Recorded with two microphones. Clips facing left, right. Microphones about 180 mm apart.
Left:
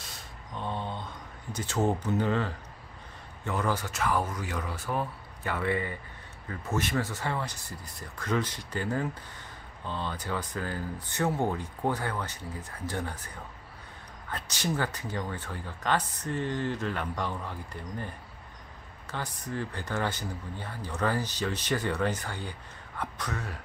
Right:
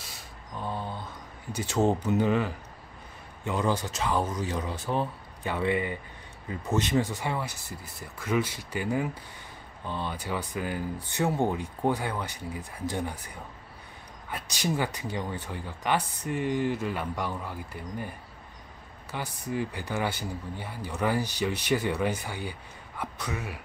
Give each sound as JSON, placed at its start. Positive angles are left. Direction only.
{"t": 0.6, "sound": "mantra", "side_deg": -5}
{"t": 3.4, "sound": "speech", "side_deg": -15}